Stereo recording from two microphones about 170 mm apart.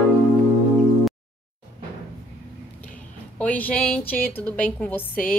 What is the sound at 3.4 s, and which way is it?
Speech, 10° left (ahead or behind).